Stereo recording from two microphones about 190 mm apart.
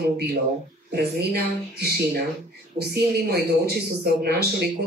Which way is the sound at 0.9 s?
55° right (ahead or behind).